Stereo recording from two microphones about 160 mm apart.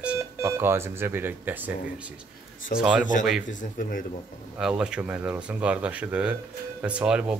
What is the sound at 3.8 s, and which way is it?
Speech, 60° left (ahead or behind).